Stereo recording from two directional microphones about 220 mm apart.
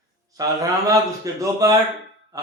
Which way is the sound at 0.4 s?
15° right (ahead or behind).